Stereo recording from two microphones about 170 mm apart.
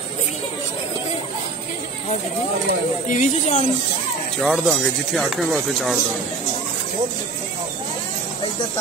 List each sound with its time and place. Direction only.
3.1 s speech: 45° left (ahead or behind)
4.4 s speech: centre (ahead or behind)